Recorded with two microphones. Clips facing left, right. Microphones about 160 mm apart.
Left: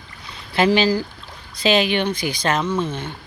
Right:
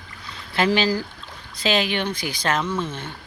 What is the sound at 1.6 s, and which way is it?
Speech, 65° left (ahead or behind).